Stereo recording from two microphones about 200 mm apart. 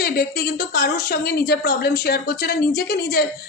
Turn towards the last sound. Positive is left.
turn(degrees=50)  # may be behind; listen again after turning